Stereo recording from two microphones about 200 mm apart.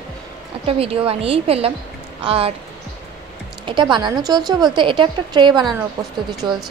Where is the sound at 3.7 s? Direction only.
25° right (ahead or behind).